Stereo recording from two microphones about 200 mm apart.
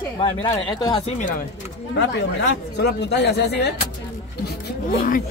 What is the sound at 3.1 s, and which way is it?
Speech, 55° left (ahead or behind).